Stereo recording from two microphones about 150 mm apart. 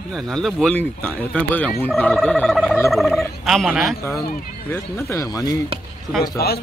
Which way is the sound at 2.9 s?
Centre (ahead or behind).